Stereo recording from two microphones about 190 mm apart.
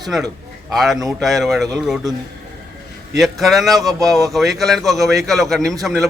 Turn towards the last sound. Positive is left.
turn(degrees=0)  # may be behind; listen again after turning